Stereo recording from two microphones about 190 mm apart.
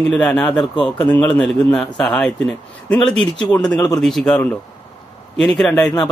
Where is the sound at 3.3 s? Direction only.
20° left (ahead or behind).